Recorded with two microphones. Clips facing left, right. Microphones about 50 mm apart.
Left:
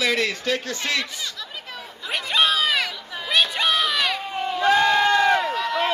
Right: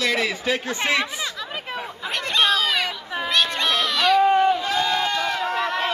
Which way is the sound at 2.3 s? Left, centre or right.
Centre.